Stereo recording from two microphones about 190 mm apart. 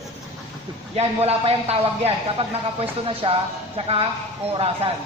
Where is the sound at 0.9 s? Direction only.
35° right (ahead or behind).